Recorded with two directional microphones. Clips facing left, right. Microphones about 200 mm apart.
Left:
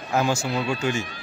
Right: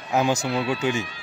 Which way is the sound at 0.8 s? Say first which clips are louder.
Right 1 dB; 15° right (ahead or behind).